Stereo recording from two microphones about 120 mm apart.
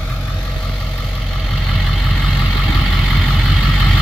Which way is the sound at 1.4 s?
Centre (ahead or behind).